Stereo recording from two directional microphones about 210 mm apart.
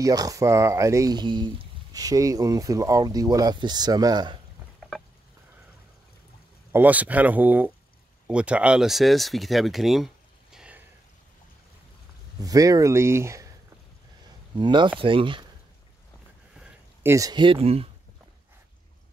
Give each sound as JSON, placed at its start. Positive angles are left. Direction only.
{"t": 0.0, "sound": "speech", "side_deg": -15}
{"t": 4.7, "sound": "a sound", "side_deg": 0}
{"t": 6.7, "sound": "speech", "side_deg": -10}
{"t": 12.4, "sound": "speech", "side_deg": -15}
{"t": 14.6, "sound": "speech", "side_deg": -20}
{"t": 16.5, "sound": "a sound", "side_deg": -10}